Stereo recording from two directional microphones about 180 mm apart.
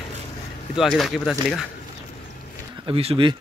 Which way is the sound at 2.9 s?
30° right (ahead or behind).